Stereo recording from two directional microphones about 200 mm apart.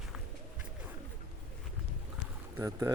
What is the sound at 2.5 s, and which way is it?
Speech, 15° right (ahead or behind).